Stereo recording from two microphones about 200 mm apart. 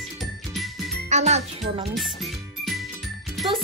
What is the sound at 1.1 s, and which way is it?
Speech, 35° right (ahead or behind).